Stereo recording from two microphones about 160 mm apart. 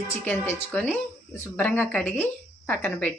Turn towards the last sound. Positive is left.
turn(degrees=10)  # may be behind; listen again after turning